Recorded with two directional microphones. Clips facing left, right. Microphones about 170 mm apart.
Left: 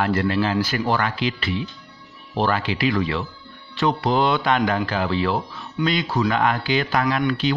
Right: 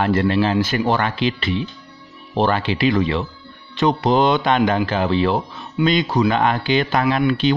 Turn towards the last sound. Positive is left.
turn(degrees=-25)  # may be behind; listen again after turning